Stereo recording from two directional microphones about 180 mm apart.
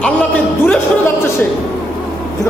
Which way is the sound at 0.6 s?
10° left (ahead or behind).